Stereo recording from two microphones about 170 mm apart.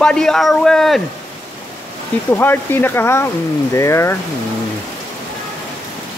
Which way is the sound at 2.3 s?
10° left (ahead or behind).